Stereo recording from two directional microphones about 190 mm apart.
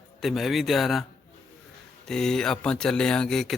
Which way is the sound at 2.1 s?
5° left (ahead or behind).